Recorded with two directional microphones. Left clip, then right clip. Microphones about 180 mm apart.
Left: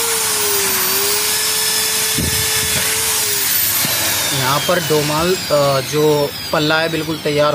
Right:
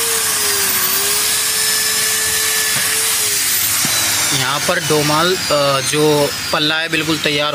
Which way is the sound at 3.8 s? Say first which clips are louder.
Right 1 dB; 45° left (ahead or behind).